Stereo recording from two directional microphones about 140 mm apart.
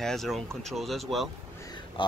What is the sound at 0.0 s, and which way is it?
Speech, centre (ahead or behind).